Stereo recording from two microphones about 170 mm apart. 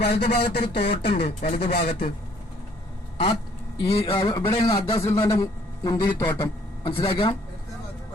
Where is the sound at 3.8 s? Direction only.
35° left (ahead or behind).